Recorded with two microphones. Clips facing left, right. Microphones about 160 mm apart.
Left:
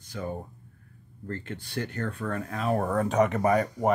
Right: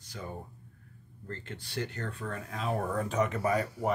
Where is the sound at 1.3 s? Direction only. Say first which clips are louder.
Left 6 dB; 55° left (ahead or behind).